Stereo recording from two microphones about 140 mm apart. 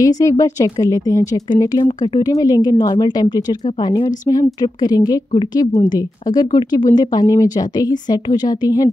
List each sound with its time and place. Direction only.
0.0 s speech: 25° left (ahead or behind)